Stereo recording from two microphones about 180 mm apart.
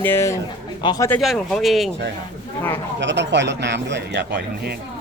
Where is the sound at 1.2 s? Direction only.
Centre (ahead or behind).